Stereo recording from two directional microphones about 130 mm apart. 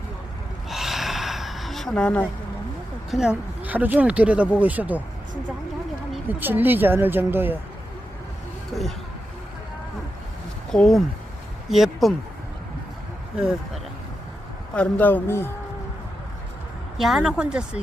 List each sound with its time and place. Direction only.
0.7 s gasp: centre (ahead or behind)
3.1 s speech: 5° right (ahead or behind)
6.2 s speech: 15° right (ahead or behind)
8.7 s speech: centre (ahead or behind)
10.7 s speech: 5° left (ahead or behind)
13.3 s speech: 5° right (ahead or behind)
14.8 s a man's voice: 15° left (ahead or behind)
17.0 s speech: 5° right (ahead or behind)